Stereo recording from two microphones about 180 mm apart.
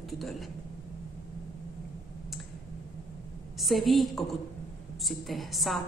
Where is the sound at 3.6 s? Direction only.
Centre (ahead or behind).